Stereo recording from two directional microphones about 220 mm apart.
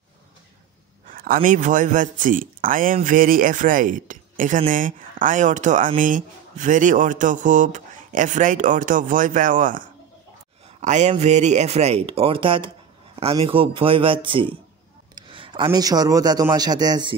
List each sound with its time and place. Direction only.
1.0 s a man's voice: 40° right (ahead or behind); by 17.1 s 20° right (ahead or behind)